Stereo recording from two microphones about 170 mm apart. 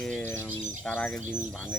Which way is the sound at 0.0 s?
5° left (ahead or behind).